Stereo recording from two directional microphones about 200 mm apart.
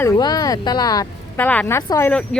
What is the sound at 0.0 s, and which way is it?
Speech, 15° left (ahead or behind).